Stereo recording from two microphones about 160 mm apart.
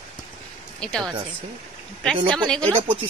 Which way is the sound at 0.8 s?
5° left (ahead or behind).